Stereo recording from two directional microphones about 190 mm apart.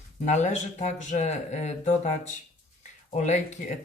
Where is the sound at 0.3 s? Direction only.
40° left (ahead or behind).